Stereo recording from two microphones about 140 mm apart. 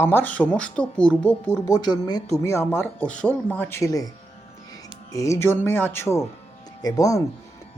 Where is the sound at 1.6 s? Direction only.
25° left (ahead or behind).